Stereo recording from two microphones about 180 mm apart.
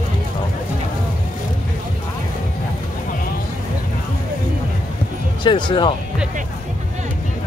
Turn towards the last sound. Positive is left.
turn(degrees=25)  # may be behind; listen again after turning